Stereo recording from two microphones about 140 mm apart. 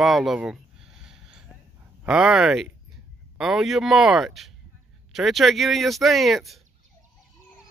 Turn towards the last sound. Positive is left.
turn(degrees=0)  # may be behind; listen again after turning